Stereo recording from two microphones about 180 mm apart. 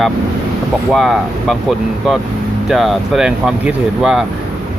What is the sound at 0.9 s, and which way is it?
Speech, centre (ahead or behind).